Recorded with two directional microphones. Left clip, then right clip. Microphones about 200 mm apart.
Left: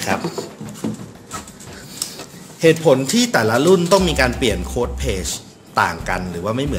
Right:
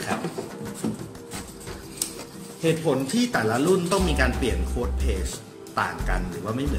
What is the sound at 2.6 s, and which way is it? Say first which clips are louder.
Speech: left 10 dB; 55° left (ahead or behind).